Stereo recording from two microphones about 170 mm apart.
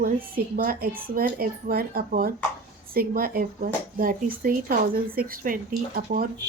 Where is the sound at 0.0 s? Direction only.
60° right (ahead or behind).